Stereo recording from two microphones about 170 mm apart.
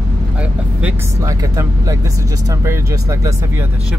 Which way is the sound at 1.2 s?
20° right (ahead or behind).